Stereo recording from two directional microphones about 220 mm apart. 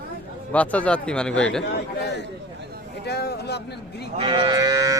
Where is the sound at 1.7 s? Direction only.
50° left (ahead or behind).